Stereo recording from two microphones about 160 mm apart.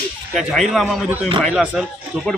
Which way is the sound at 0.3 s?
Centre (ahead or behind).